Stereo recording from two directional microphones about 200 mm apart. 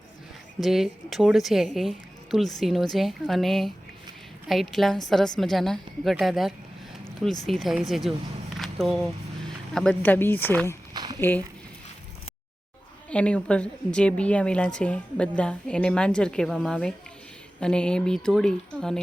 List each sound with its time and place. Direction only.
0.6 s a woman's voice: centre (ahead or behind)
8.5 s a sound: centre (ahead or behind)
9.7 s speech: 5° left (ahead or behind)
10.9 s a sound: 20° right (ahead or behind)
11.2 s speech: 10° left (ahead or behind)
13.1 s a woman's voice: 5° left (ahead or behind)